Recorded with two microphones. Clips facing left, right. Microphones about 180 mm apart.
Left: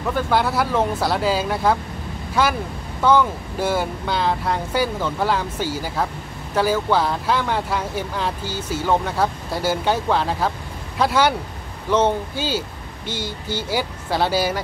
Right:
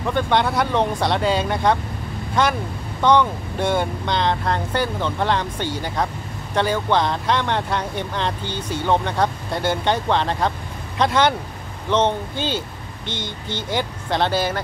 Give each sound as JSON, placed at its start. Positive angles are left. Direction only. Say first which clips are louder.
{"t": 0.0, "sound": "speech", "louder": "right 1 dB", "side_deg": 5}